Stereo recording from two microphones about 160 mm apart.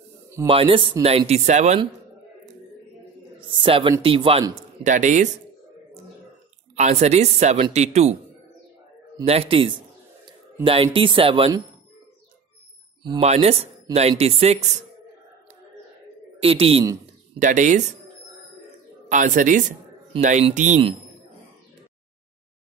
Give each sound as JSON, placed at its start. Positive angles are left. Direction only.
{"t": 0.5, "sound": "speech", "side_deg": -35}
{"t": 3.3, "sound": "a sound", "side_deg": -35}
{"t": 4.0, "sound": "speech", "side_deg": -35}
{"t": 4.8, "sound": "speech", "side_deg": -50}
{"t": 6.7, "sound": "speech", "side_deg": -45}
{"t": 9.2, "sound": "speech", "side_deg": -40}
{"t": 13.2, "sound": "speech", "side_deg": -40}
{"t": 16.3, "sound": "speech", "side_deg": -35}
{"t": 17.0, "sound": "speech", "side_deg": -50}
{"t": 19.0, "sound": "speech", "side_deg": -50}